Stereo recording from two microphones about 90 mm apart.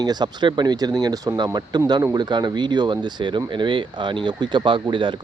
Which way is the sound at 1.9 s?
55° right (ahead or behind).